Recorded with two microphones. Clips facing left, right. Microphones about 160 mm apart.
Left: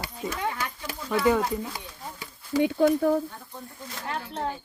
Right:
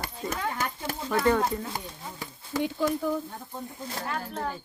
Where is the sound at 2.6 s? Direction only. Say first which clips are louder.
Left 6 dB; 60° left (ahead or behind).